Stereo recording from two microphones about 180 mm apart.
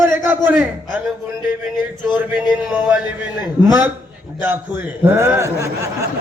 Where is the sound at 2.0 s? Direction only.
10° right (ahead or behind).